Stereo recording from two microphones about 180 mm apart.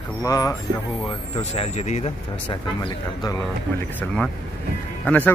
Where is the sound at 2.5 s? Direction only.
25° left (ahead or behind).